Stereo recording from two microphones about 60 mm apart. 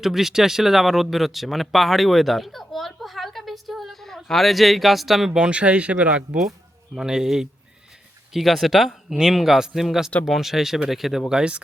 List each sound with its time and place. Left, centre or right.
0.0 s speech: centre
5.5 s speech: centre
6.9 s speech: centre